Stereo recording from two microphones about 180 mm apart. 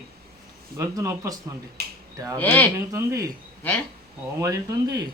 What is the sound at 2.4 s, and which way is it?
Speech, 10° left (ahead or behind).